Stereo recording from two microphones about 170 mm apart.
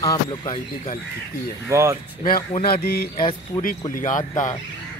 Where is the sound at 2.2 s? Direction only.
60° left (ahead or behind).